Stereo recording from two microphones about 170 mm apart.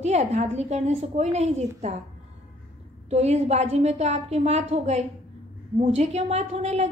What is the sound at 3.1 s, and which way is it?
A woman's voice, 40° right (ahead or behind).